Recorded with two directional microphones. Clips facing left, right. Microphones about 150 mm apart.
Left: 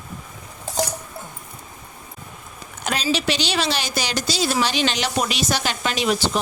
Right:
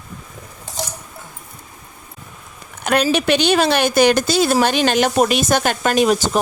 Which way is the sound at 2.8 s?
55° right (ahead or behind).